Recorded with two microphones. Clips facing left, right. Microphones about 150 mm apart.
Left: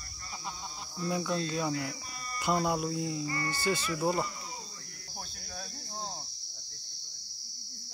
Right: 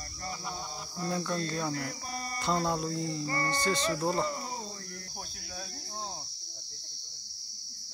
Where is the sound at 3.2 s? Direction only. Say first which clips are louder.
Right 2 dB; 45° right (ahead or behind).